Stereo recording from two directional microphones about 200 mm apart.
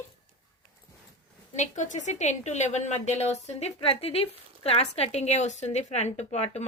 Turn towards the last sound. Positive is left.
turn(degrees=30)  # may be behind; listen again after turning